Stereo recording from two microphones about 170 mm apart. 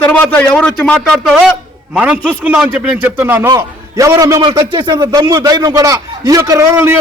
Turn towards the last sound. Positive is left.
turn(degrees=-15)  # may be behind; listen again after turning